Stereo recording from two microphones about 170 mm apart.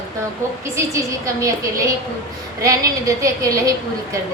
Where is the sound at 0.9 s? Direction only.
20° right (ahead or behind).